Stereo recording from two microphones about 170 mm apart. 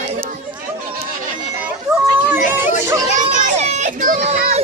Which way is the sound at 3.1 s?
45° right (ahead or behind).